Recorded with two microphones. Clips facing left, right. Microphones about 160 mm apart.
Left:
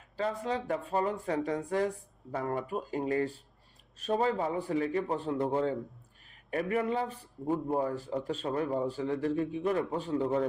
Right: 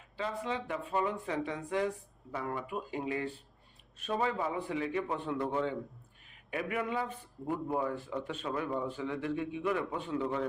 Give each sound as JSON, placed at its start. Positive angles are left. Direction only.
{"t": 0.2, "sound": "a man's voice", "side_deg": 40}
{"t": 7.4, "sound": "speech", "side_deg": 20}
{"t": 7.8, "sound": "a man's voice", "side_deg": 35}